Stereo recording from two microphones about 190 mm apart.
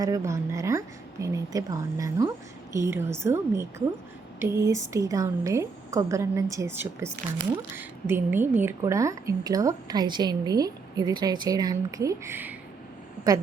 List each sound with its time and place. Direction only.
0.0 s a woman's voice: 15° right (ahead or behind)